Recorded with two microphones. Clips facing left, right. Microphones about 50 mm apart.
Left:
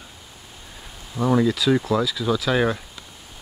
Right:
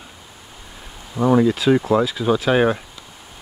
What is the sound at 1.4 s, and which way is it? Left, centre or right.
Bee, right.